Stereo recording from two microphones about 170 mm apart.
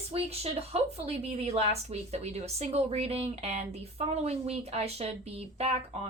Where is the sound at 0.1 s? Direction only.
35° right (ahead or behind).